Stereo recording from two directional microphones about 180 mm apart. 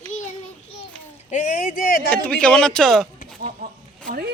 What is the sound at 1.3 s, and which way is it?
Speech, 45° left (ahead or behind).